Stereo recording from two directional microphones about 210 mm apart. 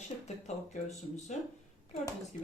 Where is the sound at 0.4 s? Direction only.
35° left (ahead or behind).